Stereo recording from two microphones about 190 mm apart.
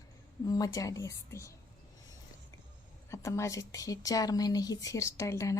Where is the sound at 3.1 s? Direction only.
15° left (ahead or behind).